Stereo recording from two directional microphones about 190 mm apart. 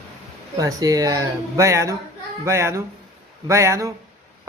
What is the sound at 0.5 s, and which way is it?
Speech, 20° right (ahead or behind).